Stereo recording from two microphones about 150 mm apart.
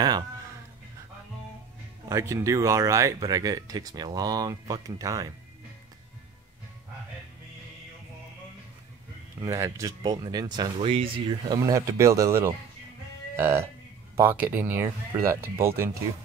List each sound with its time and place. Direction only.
2.0 s speech: 20° right (ahead or behind)
9.4 s speech: 20° right (ahead or behind)
14.1 s speech: 15° right (ahead or behind)